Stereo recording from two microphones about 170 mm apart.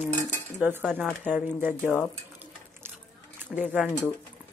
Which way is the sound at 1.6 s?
10° right (ahead or behind).